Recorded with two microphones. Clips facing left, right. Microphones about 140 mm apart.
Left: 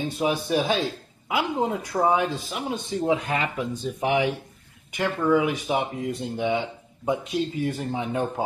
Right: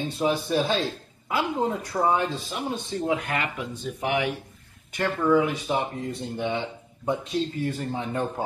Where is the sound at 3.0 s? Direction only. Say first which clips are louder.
Left 3 dB; 25° left (ahead or behind).